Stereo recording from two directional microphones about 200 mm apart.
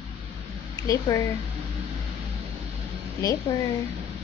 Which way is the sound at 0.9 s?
15° left (ahead or behind).